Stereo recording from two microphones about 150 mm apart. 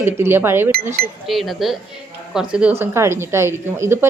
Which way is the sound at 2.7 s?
15° right (ahead or behind).